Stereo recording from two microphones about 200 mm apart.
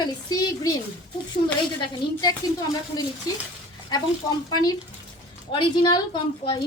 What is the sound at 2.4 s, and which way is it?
Speech, 20° left (ahead or behind).